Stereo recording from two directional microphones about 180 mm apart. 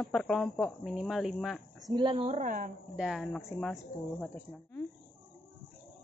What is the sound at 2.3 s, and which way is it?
Speech, 45° right (ahead or behind).